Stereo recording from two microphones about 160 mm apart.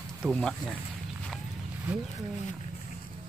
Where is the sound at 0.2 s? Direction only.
5° right (ahead or behind).